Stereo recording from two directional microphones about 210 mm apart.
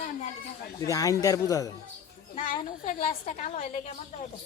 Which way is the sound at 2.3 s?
40° left (ahead or behind).